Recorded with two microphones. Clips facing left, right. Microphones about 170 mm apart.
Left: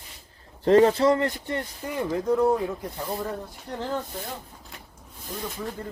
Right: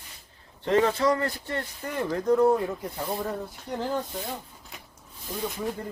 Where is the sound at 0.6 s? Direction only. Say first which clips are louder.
Left 5 dB; 35° left (ahead or behind).